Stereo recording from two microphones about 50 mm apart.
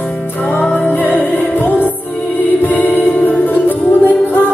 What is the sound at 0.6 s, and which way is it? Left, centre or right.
Music, left.